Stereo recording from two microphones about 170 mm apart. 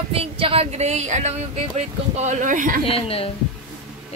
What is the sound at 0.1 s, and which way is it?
Speech, 35° right (ahead or behind).